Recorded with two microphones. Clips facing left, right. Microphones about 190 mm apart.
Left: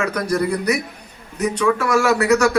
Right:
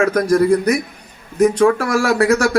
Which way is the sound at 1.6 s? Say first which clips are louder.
Right 3 dB; 40° right (ahead or behind).